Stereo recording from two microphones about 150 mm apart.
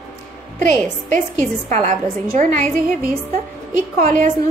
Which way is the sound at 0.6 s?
55° right (ahead or behind).